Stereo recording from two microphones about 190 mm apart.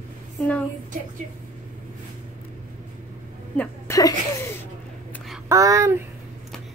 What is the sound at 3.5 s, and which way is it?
Speech, 15° left (ahead or behind).